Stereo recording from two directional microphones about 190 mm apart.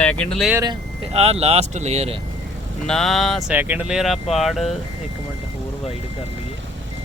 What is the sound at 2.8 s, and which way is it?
Speech, centre (ahead or behind).